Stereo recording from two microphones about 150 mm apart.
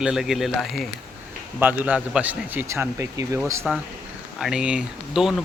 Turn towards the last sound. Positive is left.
turn(degrees=-5)  # may be behind; listen again after turning